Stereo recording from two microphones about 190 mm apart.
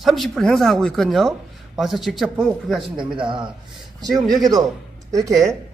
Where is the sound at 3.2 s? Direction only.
25° right (ahead or behind).